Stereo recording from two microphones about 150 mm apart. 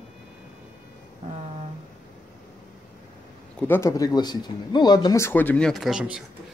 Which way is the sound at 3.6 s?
15° left (ahead or behind).